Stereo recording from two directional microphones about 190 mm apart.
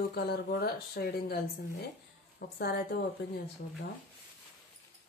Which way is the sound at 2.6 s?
55° left (ahead or behind).